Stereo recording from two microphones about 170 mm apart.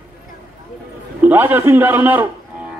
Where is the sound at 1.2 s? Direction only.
10° right (ahead or behind).